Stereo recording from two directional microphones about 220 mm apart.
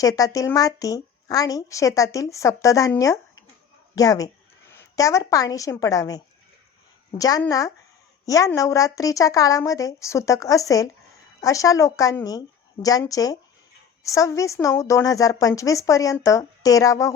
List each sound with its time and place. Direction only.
0.0 s a woman's voice: 15° left (ahead or behind)